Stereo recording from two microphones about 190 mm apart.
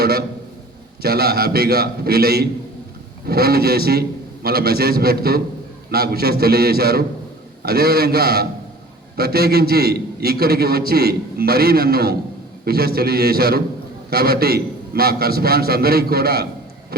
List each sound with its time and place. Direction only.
0.0 s a man's voice: 55° right (ahead or behind)